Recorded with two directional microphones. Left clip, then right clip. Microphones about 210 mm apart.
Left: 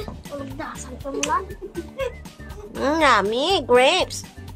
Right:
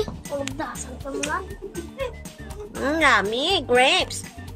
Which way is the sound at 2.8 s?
15° left (ahead or behind).